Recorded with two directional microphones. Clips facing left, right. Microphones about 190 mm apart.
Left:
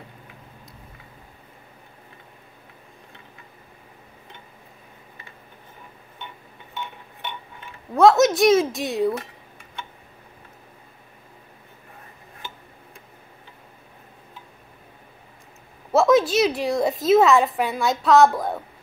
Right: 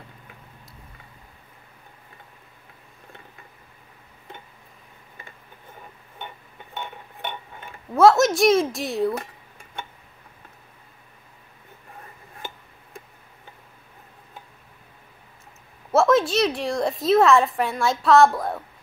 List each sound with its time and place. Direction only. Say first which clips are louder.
6.1 s dishes: right 3 dB; 50° right (ahead or behind)
7.9 s a woman's voice: left 1 dB; centre (ahead or behind)
15.9 s a woman's voice: left 1 dB; centre (ahead or behind)